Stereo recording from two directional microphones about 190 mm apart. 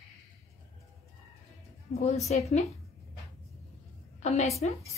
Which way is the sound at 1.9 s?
40° left (ahead or behind).